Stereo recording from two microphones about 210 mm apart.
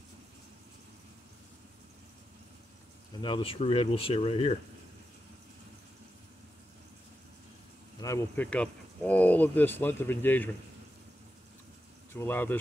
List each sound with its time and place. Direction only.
3.2 s speech: 20° left (ahead or behind)
8.0 s speech: 10° left (ahead or behind)
12.1 s speech: 10° left (ahead or behind)